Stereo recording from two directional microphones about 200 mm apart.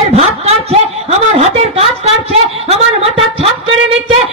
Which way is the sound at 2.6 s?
30° right (ahead or behind).